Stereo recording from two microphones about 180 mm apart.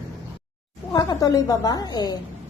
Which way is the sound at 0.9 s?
20° left (ahead or behind).